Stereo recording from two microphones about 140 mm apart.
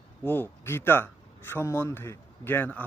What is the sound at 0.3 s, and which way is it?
A man's voice, 15° left (ahead or behind).